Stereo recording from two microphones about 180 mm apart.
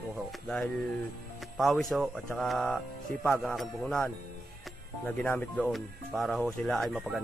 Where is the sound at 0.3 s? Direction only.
Centre (ahead or behind).